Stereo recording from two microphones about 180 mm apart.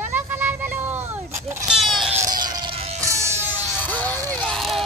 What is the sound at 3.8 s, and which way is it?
Music, 10° left (ahead or behind).